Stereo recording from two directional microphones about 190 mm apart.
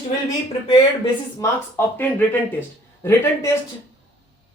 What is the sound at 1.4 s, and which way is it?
Speech, 10° left (ahead or behind).